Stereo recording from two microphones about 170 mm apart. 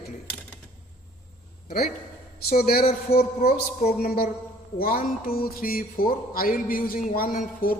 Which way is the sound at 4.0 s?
60° left (ahead or behind).